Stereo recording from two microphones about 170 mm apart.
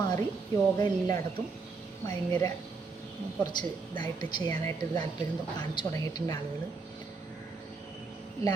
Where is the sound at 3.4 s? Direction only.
25° left (ahead or behind).